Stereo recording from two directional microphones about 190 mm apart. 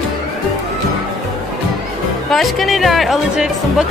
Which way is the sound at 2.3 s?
Centre (ahead or behind).